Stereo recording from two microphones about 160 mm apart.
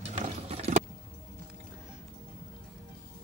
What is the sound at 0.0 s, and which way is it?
Vehicle, 40° right (ahead or behind).